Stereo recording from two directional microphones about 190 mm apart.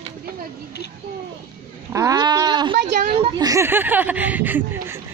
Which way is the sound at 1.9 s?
15° right (ahead or behind).